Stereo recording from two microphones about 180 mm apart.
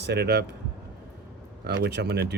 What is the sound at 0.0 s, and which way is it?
Speech, 65° right (ahead or behind).